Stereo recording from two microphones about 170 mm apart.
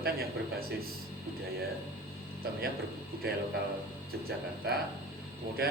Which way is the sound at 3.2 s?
65° right (ahead or behind).